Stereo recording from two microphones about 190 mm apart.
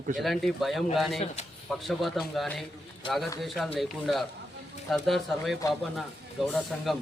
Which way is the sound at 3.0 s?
25° left (ahead or behind).